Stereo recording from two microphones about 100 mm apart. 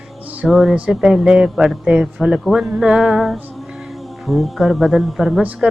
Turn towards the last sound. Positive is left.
turn(degrees=0)  # may be behind; listen again after turning